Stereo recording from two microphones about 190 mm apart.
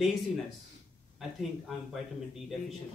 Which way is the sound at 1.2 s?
Centre (ahead or behind).